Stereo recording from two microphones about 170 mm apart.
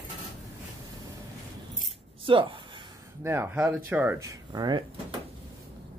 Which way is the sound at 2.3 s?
30° right (ahead or behind).